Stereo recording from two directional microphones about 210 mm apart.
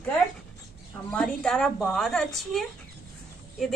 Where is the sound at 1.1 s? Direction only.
5° left (ahead or behind).